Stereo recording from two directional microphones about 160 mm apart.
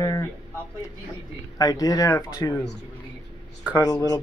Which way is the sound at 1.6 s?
25° left (ahead or behind).